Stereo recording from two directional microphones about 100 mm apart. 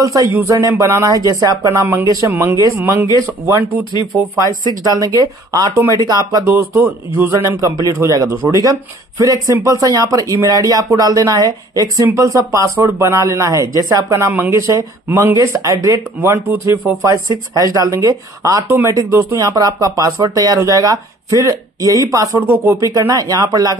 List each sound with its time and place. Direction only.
0.0 s speech: 35° right (ahead or behind)
2.0 s a man's voice: 35° right (ahead or behind)
4.8 s speech: 35° right (ahead or behind)
6.4 s a man's voice: 20° right (ahead or behind)